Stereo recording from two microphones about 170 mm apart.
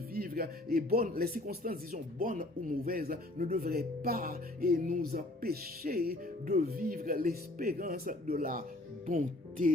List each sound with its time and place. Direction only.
0.1 s speech: 60° right (ahead or behind)